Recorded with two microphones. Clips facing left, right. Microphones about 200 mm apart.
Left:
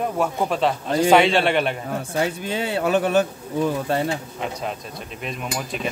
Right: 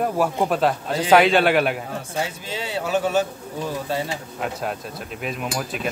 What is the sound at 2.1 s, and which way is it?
A man's voice, 55° left (ahead or behind).